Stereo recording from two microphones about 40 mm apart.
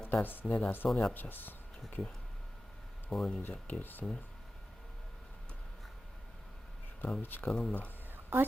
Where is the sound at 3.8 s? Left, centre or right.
Left.